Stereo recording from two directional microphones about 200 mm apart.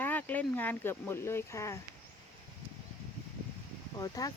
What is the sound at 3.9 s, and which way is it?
Speech, 15° left (ahead or behind).